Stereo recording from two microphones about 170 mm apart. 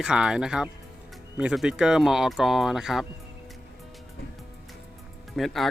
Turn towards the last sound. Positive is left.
turn(degrees=0)  # may be behind; listen again after turning